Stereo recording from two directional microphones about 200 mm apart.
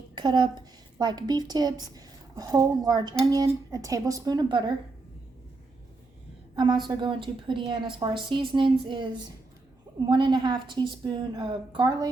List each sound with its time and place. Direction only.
0.2 s a woman's voice: 20° right (ahead or behind)
6.6 s a woman's voice: 20° right (ahead or behind)